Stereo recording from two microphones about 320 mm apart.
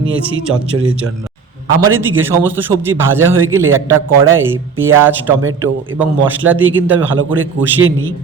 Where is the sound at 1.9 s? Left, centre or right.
Centre.